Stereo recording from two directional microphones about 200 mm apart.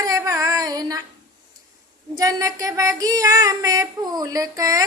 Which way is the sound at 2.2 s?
15° right (ahead or behind).